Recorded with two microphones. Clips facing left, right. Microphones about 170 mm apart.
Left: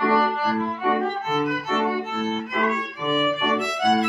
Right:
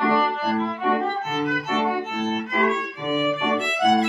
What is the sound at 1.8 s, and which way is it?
Violin, 20° right (ahead or behind).